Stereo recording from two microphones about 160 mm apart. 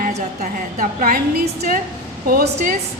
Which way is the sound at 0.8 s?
55° right (ahead or behind).